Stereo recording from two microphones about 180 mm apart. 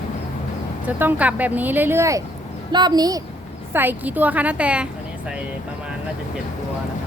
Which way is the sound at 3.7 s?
10° right (ahead or behind).